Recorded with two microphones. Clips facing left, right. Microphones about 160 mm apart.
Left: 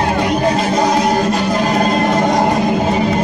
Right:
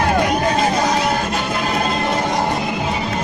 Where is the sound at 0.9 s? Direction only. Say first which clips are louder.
Left 5 dB; 40° left (ahead or behind).